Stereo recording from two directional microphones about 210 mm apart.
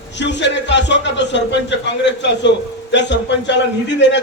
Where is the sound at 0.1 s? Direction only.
55° left (ahead or behind).